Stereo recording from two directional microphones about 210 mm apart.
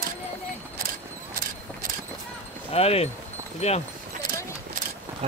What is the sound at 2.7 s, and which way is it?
Speech, 30° left (ahead or behind).